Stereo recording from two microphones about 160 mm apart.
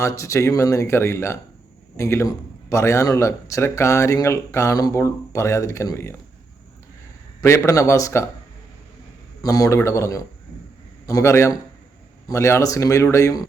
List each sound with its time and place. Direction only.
0.0 s a man's voice: 20° left (ahead or behind)
7.4 s speech: 20° left (ahead or behind)
9.4 s a man's voice: 20° left (ahead or behind)